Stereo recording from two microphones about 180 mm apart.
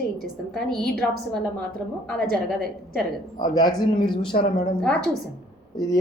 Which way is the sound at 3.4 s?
25° left (ahead or behind).